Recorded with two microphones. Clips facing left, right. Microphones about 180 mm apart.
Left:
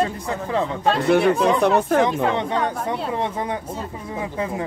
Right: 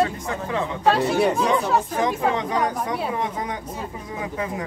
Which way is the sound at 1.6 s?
65° left (ahead or behind).